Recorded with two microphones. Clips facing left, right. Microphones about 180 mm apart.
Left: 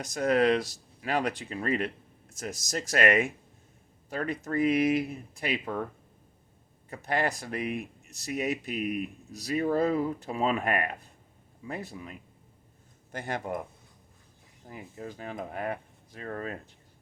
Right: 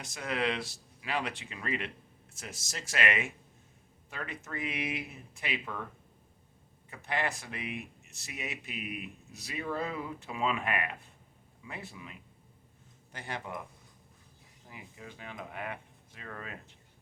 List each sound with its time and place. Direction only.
0.0 s speech: 40° left (ahead or behind)
6.9 s speech: 40° left (ahead or behind)
14.7 s speech: 40° left (ahead or behind)